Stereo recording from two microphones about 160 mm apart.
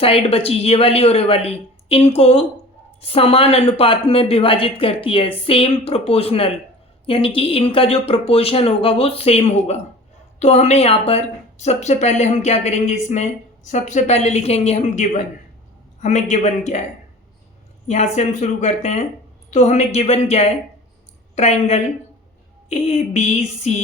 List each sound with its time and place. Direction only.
0.0 s a woman's voice: 35° left (ahead or behind)
17.8 s a woman's voice: 45° left (ahead or behind)